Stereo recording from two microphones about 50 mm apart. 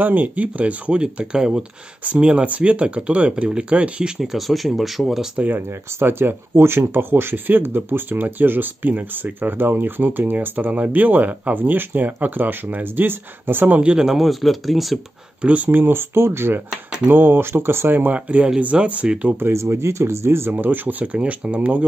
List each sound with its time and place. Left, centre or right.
0.0 s speech: right
4.2 s speech: centre
5.9 s speech: right
13.7 s speech: right
13.9 s speech: centre
15.4 s speech: right
15.7 s speech: right
16.7 s speech: centre
17.1 s speech: right
18.1 s speech: right
19.5 s speech: right
20.5 s speech: right